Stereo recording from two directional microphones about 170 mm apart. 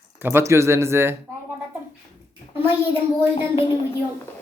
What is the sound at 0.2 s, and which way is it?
Speech, 15° right (ahead or behind).